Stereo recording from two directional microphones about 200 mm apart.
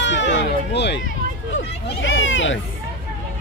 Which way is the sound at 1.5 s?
70° left (ahead or behind).